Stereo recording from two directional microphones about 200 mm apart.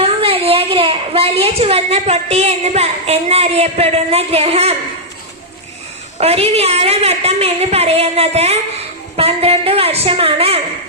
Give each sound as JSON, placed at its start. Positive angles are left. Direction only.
{"t": 0.0, "sound": "a woman's voice", "side_deg": -30}
{"t": 6.1, "sound": "a woman's voice", "side_deg": -30}